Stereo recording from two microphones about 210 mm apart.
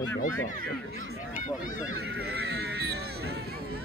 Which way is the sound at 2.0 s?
50° right (ahead or behind).